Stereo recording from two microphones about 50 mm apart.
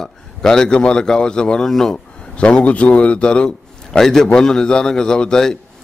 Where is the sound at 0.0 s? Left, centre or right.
Centre.